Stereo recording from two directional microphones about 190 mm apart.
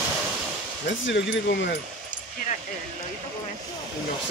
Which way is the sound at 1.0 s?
70° left (ahead or behind).